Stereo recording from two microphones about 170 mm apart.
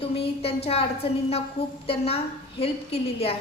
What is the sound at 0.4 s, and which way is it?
A woman's voice, 35° left (ahead or behind).